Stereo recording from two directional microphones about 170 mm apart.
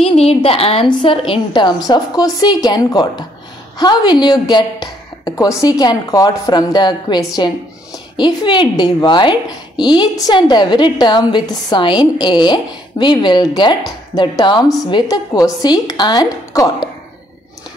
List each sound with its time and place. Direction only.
0.0 s a woman's voice: 35° left (ahead or behind)